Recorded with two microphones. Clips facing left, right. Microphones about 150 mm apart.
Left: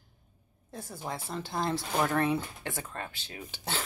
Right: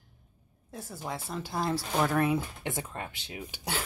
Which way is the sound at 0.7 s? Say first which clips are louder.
Even; 5° right (ahead or behind).